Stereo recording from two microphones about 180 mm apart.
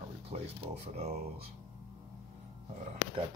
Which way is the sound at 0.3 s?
40° right (ahead or behind).